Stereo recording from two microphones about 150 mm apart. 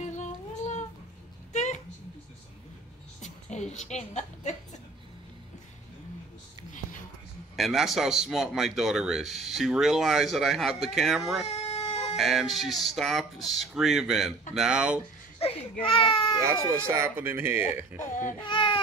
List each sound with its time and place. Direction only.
0.1 s a sound: 50° left (ahead or behind)
3.2 s a woman's voice: 50° left (ahead or behind)
7.5 s speech: centre (ahead or behind)
11.4 s baby cry: 45° left (ahead or behind)
12.2 s speech: centre (ahead or behind)
15.3 s a sound: 40° left (ahead or behind)
15.8 s speech: 35° left (ahead or behind)
16.4 s speech: 20° right (ahead or behind)
18.4 s babbling: 35° left (ahead or behind)